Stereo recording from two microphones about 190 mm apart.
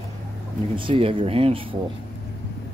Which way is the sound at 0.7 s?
25° right (ahead or behind).